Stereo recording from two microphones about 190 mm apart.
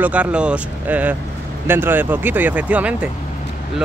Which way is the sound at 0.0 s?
5° right (ahead or behind).